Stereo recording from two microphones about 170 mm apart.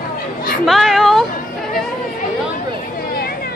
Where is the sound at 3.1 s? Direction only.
65° left (ahead or behind).